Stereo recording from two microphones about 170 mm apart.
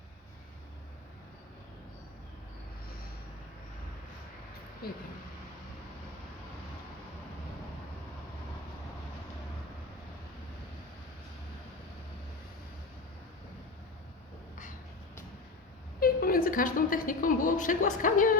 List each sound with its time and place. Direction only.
4.8 s speech: 60° left (ahead or behind)
16.0 s a woman's voice: 60° left (ahead or behind)